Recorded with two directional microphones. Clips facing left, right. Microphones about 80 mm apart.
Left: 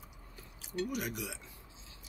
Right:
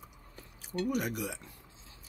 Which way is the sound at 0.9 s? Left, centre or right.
Right.